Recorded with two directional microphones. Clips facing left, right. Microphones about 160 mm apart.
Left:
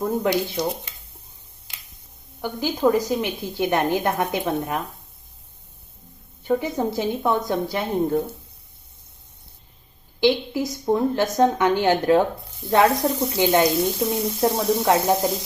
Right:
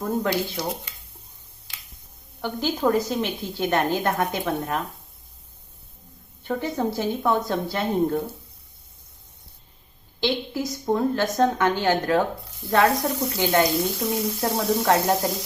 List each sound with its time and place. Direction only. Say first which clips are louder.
0.2 s speech: left 3 dB; 20° left (ahead or behind)
2.4 s a woman's voice: left 3 dB; 10° left (ahead or behind)
6.5 s a woman's voice: left 3 dB; 15° left (ahead or behind)
10.2 s a woman's voice: left 5 dB; 15° left (ahead or behind)